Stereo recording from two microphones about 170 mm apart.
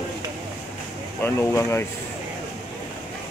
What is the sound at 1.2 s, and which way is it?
Speech, 15° left (ahead or behind).